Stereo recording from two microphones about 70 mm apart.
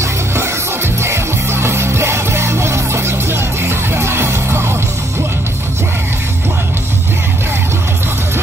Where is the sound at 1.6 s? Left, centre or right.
Right.